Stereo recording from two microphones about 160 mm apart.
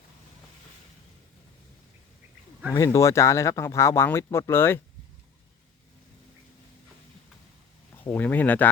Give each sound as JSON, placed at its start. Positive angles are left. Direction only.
{"t": 2.7, "sound": "speech", "side_deg": 20}
{"t": 8.0, "sound": "speech", "side_deg": 10}